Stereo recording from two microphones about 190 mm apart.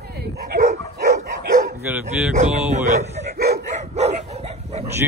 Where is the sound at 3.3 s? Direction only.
55° right (ahead or behind).